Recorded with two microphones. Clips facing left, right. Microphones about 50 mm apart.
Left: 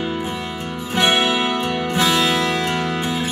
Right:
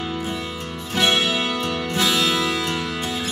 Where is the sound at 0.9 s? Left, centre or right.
Centre.